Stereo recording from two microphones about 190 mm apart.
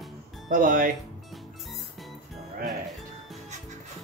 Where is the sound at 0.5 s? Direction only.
45° right (ahead or behind).